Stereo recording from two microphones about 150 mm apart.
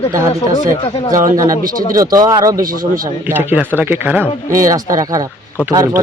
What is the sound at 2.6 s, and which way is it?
Speech, 70° right (ahead or behind).